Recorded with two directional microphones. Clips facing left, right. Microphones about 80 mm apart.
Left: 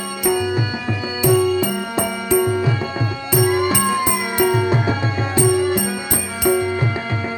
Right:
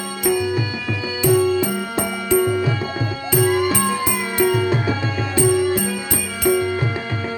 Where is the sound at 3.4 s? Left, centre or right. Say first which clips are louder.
Left 1 dB; centre.